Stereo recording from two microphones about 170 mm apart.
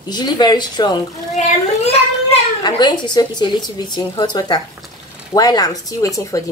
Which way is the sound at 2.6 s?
25° left (ahead or behind).